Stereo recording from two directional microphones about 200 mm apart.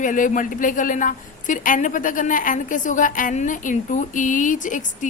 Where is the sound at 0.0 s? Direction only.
40° left (ahead or behind).